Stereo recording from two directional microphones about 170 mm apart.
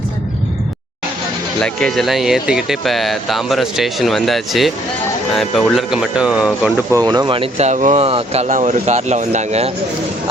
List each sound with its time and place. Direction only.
1.6 s speech: 5° left (ahead or behind)
6.9 s speech: 25° right (ahead or behind); by 9.7 s 40° right (ahead or behind)